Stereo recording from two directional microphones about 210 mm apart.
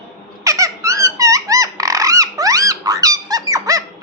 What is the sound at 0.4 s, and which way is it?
Squeak, 15° right (ahead or behind).